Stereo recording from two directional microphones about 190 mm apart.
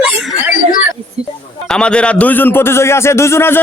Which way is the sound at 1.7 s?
5° left (ahead or behind).